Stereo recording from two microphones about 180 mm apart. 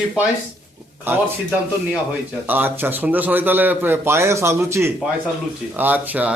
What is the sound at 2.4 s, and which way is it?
A man's voice, 10° right (ahead or behind).